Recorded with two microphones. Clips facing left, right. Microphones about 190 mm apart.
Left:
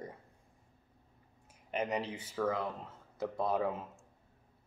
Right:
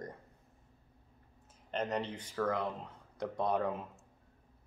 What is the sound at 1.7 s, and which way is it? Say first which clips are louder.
Speech: even; 10° left (ahead or behind).